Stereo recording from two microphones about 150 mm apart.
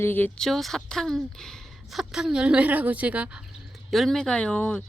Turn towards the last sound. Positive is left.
turn(degrees=10)  # may be behind; listen again after turning